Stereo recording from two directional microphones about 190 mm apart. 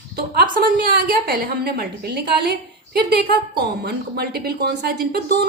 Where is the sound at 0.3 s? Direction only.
55° right (ahead or behind).